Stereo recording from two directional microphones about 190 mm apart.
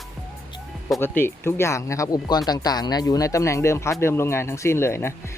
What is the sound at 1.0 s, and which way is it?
Speech, 10° left (ahead or behind).